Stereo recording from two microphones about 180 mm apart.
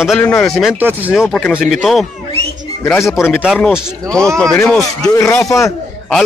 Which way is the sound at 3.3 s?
5° right (ahead or behind).